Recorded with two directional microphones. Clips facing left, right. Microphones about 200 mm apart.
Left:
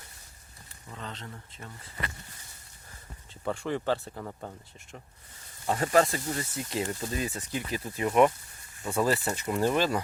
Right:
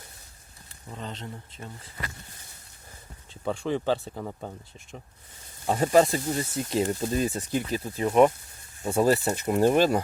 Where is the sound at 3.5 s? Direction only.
20° right (ahead or behind).